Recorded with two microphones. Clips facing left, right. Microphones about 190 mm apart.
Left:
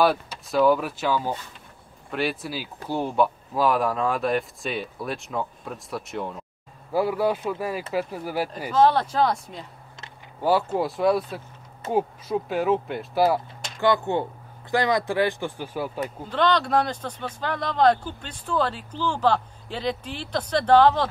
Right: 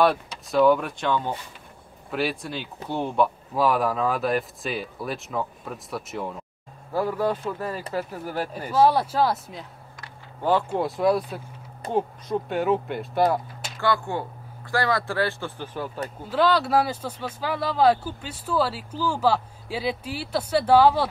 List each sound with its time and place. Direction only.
0.0 s speech: centre (ahead or behind)
6.9 s speech: 10° left (ahead or behind)
8.7 s speech: 10° right (ahead or behind)
10.8 s speech: centre (ahead or behind)
13.7 s speech: 20° left (ahead or behind)
16.3 s speech: 5° right (ahead or behind)